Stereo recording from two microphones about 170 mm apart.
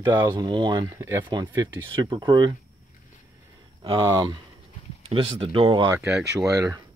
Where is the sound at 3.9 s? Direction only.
25° right (ahead or behind).